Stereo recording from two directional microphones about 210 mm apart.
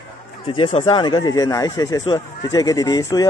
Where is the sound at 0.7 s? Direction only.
25° left (ahead or behind).